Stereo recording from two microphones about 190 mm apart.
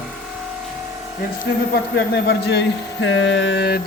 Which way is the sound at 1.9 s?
60° left (ahead or behind).